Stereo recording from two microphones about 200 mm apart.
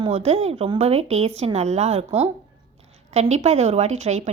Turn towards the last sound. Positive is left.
turn(degrees=-35)  # may be behind; listen again after turning